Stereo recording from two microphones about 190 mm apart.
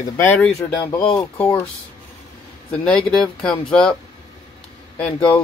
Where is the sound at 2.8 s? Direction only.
5° left (ahead or behind).